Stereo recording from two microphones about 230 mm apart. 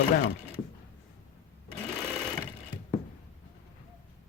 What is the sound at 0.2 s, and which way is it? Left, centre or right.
Speech, left.